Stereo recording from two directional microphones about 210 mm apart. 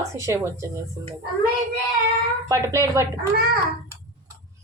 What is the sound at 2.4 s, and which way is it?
Speech, 15° right (ahead or behind).